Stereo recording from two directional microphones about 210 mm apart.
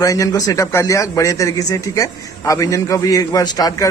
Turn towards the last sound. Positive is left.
turn(degrees=15)  # may be behind; listen again after turning